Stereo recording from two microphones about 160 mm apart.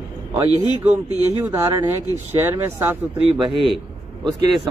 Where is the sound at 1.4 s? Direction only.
15° right (ahead or behind).